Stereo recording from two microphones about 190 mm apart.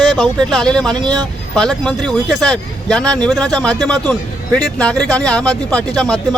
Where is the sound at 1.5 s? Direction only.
5° left (ahead or behind).